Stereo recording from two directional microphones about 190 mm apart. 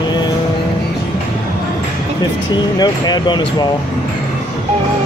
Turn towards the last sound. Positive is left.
turn(degrees=20)  # may be behind; listen again after turning